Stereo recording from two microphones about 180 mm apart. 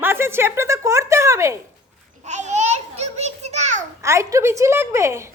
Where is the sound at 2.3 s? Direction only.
40° right (ahead or behind).